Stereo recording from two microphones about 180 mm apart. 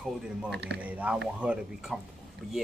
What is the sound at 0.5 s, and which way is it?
Speech, 70° right (ahead or behind).